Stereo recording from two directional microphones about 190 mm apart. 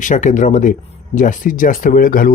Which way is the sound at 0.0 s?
40° left (ahead or behind).